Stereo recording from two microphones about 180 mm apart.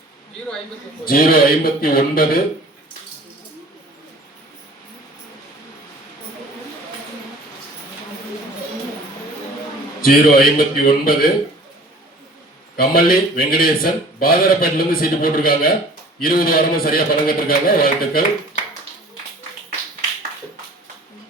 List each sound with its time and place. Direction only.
1.0 s speech: 55° left (ahead or behind)
10.0 s speech: 55° left (ahead or behind)
12.7 s speech: 55° left (ahead or behind)